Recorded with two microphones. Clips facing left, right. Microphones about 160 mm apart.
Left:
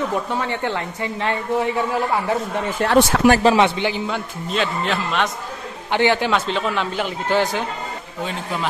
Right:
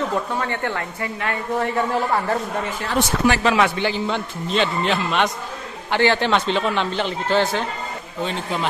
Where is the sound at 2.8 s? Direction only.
70° left (ahead or behind).